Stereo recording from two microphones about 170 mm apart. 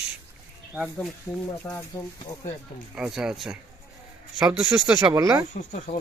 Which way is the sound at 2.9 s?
5° right (ahead or behind).